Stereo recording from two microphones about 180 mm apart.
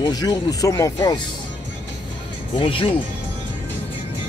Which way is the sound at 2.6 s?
30° left (ahead or behind).